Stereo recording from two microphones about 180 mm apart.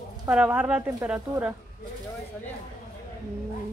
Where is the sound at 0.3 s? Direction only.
5° right (ahead or behind).